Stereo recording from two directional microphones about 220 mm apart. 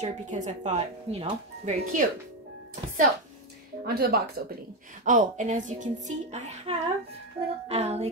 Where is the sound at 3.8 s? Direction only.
45° right (ahead or behind).